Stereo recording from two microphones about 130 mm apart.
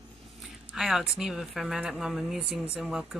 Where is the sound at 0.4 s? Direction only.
Centre (ahead or behind).